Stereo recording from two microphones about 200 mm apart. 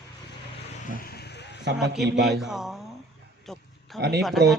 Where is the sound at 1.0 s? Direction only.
55° left (ahead or behind).